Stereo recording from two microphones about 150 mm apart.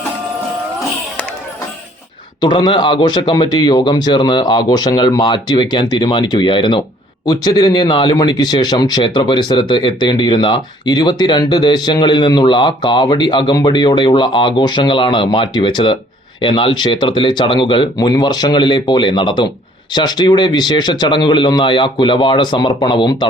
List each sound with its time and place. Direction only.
2.4 s a man's voice: 30° left (ahead or behind)